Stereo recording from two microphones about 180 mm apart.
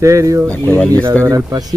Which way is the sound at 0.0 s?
15° right (ahead or behind).